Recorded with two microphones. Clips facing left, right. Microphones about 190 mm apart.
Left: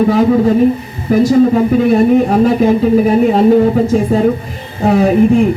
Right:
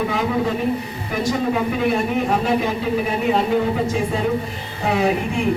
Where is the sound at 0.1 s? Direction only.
40° left (ahead or behind).